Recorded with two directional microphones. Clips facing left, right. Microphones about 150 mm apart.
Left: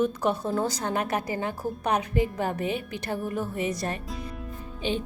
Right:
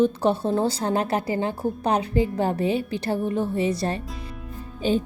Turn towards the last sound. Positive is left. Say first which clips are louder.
# right 6 dB
turn(degrees=-40)  # may be behind; listen again after turning